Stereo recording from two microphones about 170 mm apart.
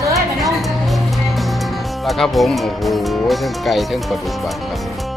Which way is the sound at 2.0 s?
Centre (ahead or behind).